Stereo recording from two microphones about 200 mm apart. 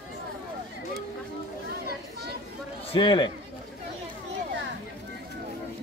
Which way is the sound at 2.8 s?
25° left (ahead or behind).